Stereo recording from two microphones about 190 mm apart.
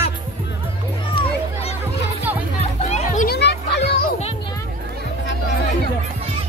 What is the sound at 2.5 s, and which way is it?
Music, 35° left (ahead or behind).